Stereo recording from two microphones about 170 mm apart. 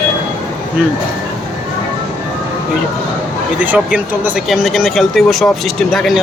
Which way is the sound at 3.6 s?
10° right (ahead or behind).